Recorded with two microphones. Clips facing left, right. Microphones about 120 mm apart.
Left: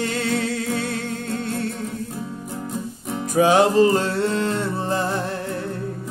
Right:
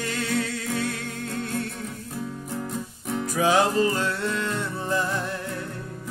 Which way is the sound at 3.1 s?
25° left (ahead or behind).